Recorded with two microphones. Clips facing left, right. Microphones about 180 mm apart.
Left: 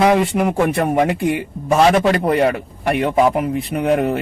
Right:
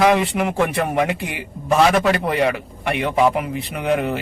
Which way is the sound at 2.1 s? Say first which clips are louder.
Left 4 dB; 35° left (ahead or behind).